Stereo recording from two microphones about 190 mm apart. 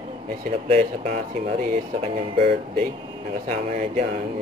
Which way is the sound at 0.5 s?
35° right (ahead or behind).